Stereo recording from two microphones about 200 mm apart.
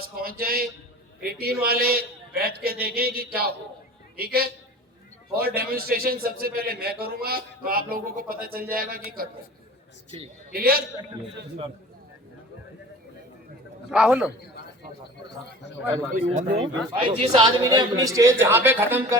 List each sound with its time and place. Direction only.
0.2 s a man's voice: 45° right (ahead or behind)
10.5 s a man's voice: 50° right (ahead or behind)
13.9 s a man's voice: 5° right (ahead or behind)
16.2 s a woman's voice: 35° right (ahead or behind); by 19.0 s 10° right (ahead or behind)